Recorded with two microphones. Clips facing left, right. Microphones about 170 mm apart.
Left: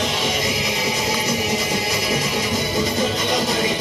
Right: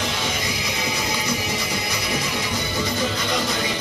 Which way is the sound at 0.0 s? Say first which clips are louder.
Left 4 dB; 20° left (ahead or behind).